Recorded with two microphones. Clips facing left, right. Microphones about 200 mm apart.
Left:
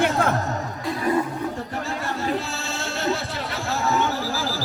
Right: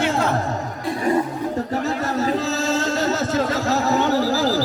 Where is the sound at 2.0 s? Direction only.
40° right (ahead or behind).